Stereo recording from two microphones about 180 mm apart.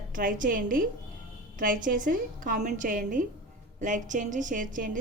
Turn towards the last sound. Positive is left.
turn(degrees=-45)  # may be behind; listen again after turning